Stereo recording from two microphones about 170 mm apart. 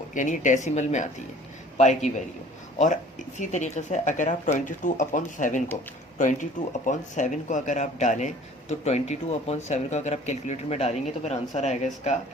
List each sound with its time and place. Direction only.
0.1 s speech: 50° left (ahead or behind)